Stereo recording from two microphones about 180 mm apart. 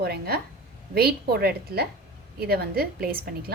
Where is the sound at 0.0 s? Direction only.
60° right (ahead or behind).